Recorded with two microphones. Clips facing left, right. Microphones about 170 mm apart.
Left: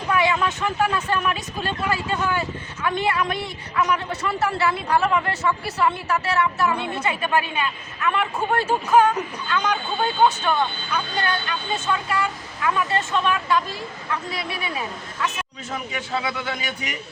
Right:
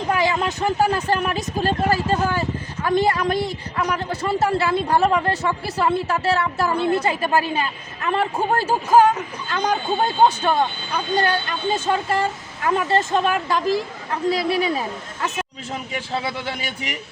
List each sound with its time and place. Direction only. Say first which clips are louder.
0.1 s speech: even; 35° right (ahead or behind)